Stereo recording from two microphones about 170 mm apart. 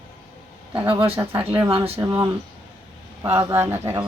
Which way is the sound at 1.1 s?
15° right (ahead or behind).